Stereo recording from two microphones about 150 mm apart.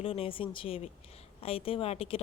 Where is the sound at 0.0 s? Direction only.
40° left (ahead or behind).